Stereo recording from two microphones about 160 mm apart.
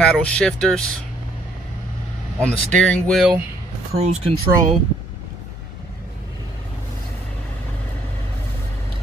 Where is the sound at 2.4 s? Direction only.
5° left (ahead or behind).